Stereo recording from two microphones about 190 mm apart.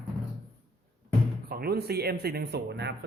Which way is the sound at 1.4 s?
55° right (ahead or behind).